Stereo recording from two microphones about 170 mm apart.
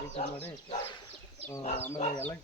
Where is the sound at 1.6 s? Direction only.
40° left (ahead or behind).